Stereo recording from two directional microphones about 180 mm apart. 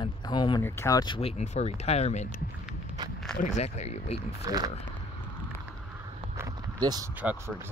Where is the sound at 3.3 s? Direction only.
40° left (ahead or behind).